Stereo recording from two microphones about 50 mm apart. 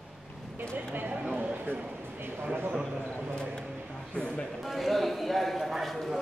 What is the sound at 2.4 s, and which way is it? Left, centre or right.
Speech, right.